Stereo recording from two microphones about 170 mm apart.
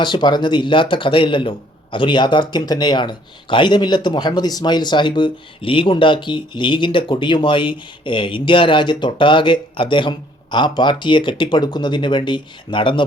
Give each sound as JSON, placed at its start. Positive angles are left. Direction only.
{"t": 0.0, "sound": "a man's voice", "side_deg": 25}